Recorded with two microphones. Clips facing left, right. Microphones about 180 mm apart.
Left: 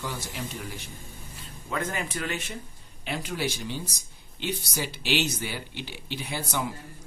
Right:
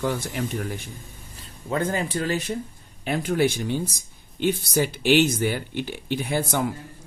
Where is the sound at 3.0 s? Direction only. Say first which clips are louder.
Right 9 dB; 50° right (ahead or behind).